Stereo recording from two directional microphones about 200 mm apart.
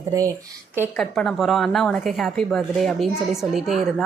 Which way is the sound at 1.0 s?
Centre (ahead or behind).